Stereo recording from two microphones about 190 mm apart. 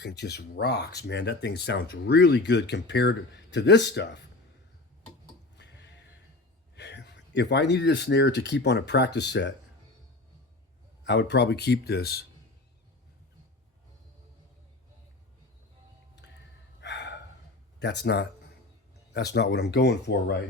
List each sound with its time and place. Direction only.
0.0 s speech: 60° left (ahead or behind)
5.5 s tick-tock: 65° left (ahead or behind)
6.7 s speech: 65° left (ahead or behind)
11.0 s speech: 65° left (ahead or behind)
16.8 s a sound: 65° left (ahead or behind)
17.7 s speech: 65° left (ahead or behind)